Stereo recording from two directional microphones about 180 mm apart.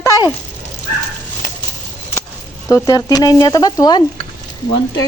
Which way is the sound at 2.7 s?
20° left (ahead or behind).